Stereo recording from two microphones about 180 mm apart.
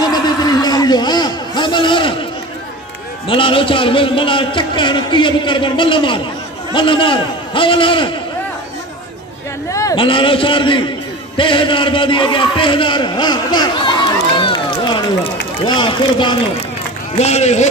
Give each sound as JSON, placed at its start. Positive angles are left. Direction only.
{"t": 0.0, "sound": "a sound", "side_deg": 20}
{"t": 3.3, "sound": "a man's voice", "side_deg": 30}
{"t": 9.7, "sound": "a sound", "side_deg": 20}
{"t": 9.9, "sound": "a man's voice", "side_deg": 30}
{"t": 14.4, "sound": "run", "side_deg": 25}
{"t": 15.6, "sound": "a man's voice", "side_deg": 25}
{"t": 17.2, "sound": "speech", "side_deg": 35}